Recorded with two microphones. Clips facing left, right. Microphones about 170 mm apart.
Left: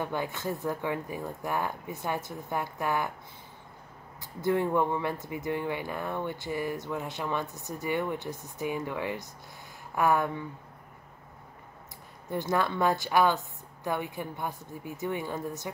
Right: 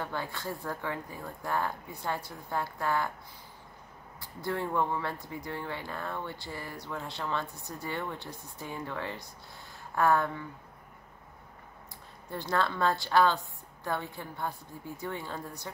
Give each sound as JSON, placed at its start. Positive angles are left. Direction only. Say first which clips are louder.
{"t": 0.0, "sound": "speech", "louder": "left 4 dB", "side_deg": 15}
{"t": 4.2, "sound": "speech", "louder": "left 6 dB", "side_deg": 20}
{"t": 12.3, "sound": "speech", "louder": "left 2 dB", "side_deg": 15}